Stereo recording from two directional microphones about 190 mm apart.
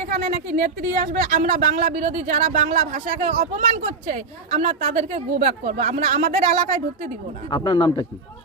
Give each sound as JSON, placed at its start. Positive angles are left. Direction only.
{"t": 0.0, "sound": "speech", "side_deg": -45}
{"t": 7.5, "sound": "speech", "side_deg": 20}